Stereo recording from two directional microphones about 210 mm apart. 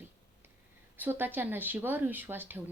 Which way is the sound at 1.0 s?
10° right (ahead or behind).